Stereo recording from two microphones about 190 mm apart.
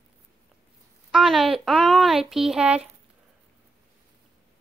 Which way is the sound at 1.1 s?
Centre (ahead or behind).